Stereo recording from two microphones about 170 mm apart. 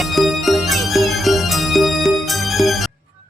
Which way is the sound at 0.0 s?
Centre (ahead or behind).